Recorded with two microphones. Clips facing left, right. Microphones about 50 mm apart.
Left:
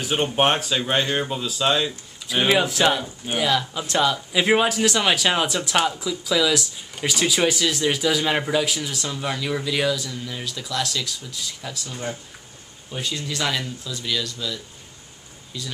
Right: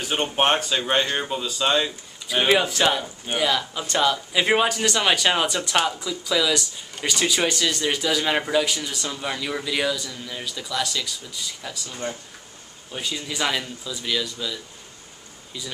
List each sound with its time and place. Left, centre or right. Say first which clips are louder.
0.0 s speech: left 2 dB; centre
12.9 s speech: left 1 dB; centre